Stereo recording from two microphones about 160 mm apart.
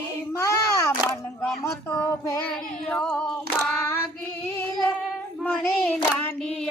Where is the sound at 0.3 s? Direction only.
20° left (ahead or behind).